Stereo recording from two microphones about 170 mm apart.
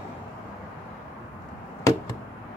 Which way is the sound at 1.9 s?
20° left (ahead or behind).